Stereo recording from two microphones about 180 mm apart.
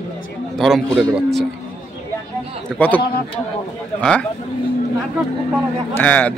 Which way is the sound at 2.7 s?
Centre (ahead or behind).